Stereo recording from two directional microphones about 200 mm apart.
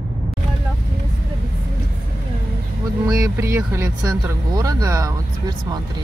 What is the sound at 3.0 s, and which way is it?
Speech, 15° right (ahead or behind).